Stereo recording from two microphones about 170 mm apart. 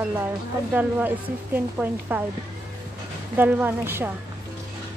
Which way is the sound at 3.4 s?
10° right (ahead or behind).